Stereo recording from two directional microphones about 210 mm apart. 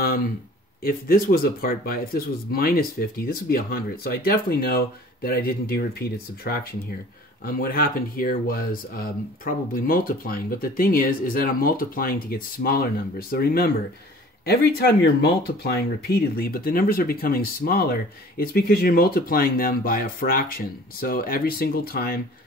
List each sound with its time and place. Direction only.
0.8 s speech: 45° left (ahead or behind)